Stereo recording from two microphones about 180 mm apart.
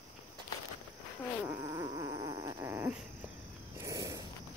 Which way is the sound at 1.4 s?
15° right (ahead or behind).